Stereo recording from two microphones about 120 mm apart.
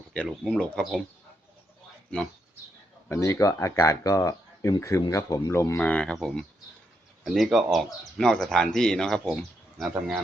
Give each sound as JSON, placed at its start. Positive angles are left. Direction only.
{"t": 0.4, "sound": "speech", "side_deg": 0}
{"t": 3.1, "sound": "speech", "side_deg": 25}
{"t": 5.8, "sound": "speech", "side_deg": 10}